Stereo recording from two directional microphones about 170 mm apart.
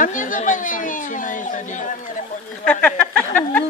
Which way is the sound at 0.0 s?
50° left (ahead or behind).